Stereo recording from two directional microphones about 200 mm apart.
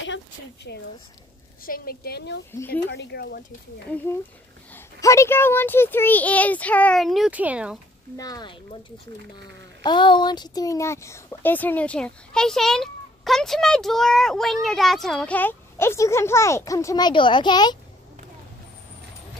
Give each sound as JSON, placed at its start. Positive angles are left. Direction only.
{"t": 0.7, "sound": "a woman's voice", "side_deg": 55}
{"t": 4.7, "sound": "speech", "side_deg": 15}
{"t": 8.2, "sound": "speech", "side_deg": 20}
{"t": 9.8, "sound": "speech", "side_deg": 25}